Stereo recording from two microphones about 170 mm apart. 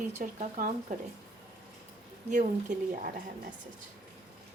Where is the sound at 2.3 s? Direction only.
45° right (ahead or behind).